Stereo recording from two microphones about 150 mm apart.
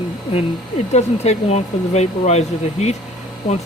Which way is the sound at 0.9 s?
45° left (ahead or behind).